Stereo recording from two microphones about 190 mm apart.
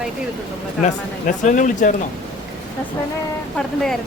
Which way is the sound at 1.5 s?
40° left (ahead or behind).